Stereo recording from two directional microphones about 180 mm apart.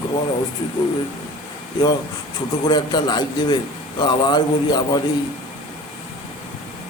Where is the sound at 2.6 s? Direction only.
25° left (ahead or behind).